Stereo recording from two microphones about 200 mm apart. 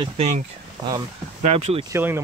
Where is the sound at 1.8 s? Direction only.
10° right (ahead or behind).